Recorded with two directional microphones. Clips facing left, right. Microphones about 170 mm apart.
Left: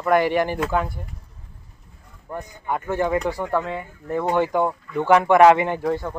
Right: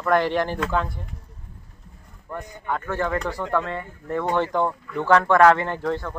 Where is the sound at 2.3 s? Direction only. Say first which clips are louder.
Left 1 dB; 15° left (ahead or behind).